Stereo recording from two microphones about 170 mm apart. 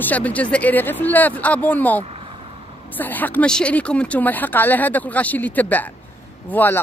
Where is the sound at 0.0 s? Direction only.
10° left (ahead or behind).